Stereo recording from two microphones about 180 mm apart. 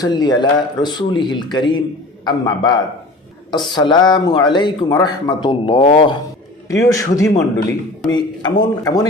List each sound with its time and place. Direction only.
0.0 s a man's voice: 20° left (ahead or behind)
3.8 s a man's voice: 25° left (ahead or behind)
6.7 s a man's voice: 20° left (ahead or behind)